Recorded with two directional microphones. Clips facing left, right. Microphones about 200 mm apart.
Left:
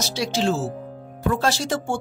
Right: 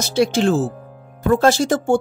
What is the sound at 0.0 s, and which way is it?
Speech, 55° right (ahead or behind).